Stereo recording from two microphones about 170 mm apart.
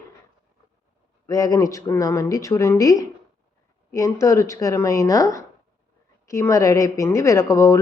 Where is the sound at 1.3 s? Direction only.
20° left (ahead or behind).